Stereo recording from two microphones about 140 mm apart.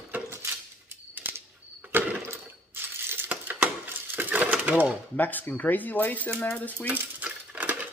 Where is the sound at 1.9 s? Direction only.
15° right (ahead or behind).